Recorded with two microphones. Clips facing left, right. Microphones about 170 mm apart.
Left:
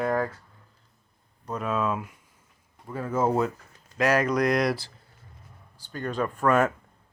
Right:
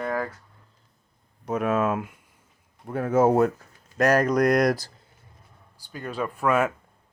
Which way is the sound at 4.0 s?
45° right (ahead or behind).